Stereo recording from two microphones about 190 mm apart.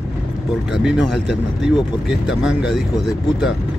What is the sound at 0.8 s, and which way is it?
Speech, 5° right (ahead or behind).